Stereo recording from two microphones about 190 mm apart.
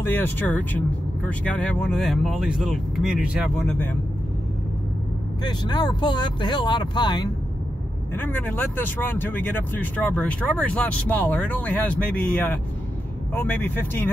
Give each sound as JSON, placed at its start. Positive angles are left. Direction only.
{"t": 0.0, "sound": "speech", "side_deg": 10}
{"t": 5.4, "sound": "speech", "side_deg": 20}
{"t": 8.1, "sound": "speech", "side_deg": 10}